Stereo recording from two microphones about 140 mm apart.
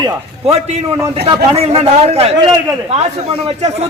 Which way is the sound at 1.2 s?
35° right (ahead or behind).